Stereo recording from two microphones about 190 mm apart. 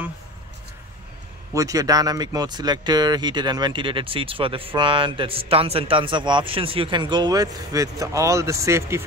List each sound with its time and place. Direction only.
1.5 s speech: 20° right (ahead or behind)